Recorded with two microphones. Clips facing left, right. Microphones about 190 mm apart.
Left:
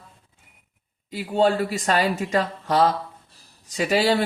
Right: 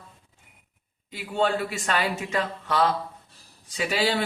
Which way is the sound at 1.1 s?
35° left (ahead or behind).